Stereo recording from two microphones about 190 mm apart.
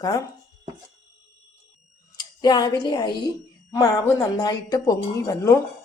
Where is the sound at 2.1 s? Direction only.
20° left (ahead or behind).